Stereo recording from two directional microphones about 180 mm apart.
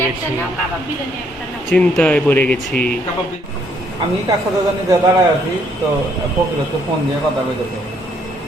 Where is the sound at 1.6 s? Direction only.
5° left (ahead or behind).